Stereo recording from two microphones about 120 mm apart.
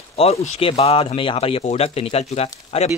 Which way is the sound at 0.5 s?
50° left (ahead or behind).